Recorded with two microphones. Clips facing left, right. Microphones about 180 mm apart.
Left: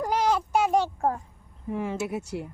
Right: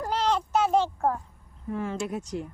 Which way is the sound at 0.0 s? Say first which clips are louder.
Left 2 dB; 10° left (ahead or behind).